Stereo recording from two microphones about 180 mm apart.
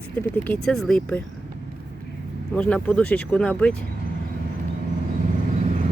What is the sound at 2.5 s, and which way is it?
Speech, 5° left (ahead or behind).